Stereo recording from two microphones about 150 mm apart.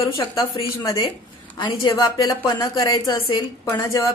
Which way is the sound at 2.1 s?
30° left (ahead or behind).